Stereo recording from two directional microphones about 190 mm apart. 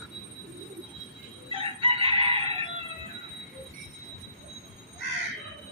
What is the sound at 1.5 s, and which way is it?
Chicken, 30° right (ahead or behind).